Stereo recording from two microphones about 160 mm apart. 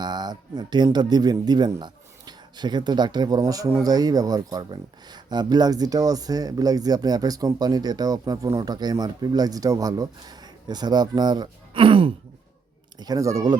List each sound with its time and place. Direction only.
0.0 s speech: 25° right (ahead or behind)
13.0 s speech: 20° right (ahead or behind)